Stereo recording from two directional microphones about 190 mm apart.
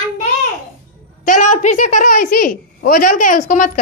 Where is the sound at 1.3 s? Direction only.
40° left (ahead or behind).